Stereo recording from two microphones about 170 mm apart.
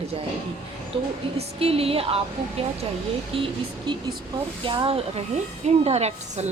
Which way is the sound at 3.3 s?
30° right (ahead or behind).